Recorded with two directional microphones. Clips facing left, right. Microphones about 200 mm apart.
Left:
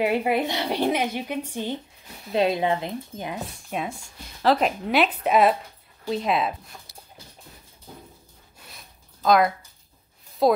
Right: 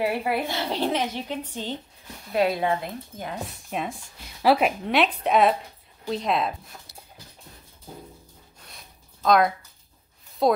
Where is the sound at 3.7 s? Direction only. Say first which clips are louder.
Even; centre (ahead or behind).